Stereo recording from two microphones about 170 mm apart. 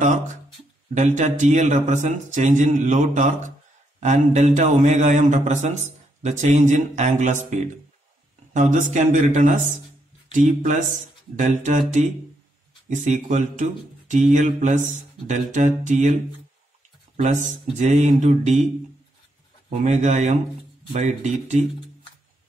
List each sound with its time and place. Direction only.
0.9 s a man's voice: 45° right (ahead or behind)
11.3 s a man's voice: 45° right (ahead or behind)
12.8 s a man's voice: 45° right (ahead or behind)
17.2 s a man's voice: 45° right (ahead or behind)
19.7 s a man's voice: 40° right (ahead or behind)